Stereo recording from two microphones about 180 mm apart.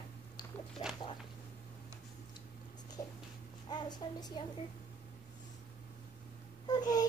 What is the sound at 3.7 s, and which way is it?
Speech, 25° left (ahead or behind).